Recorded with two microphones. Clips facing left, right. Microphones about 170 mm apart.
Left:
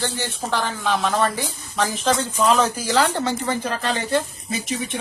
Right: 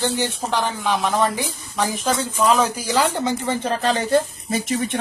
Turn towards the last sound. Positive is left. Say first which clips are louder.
# right 4 dB
turn(degrees=-50)  # may be behind; listen again after turning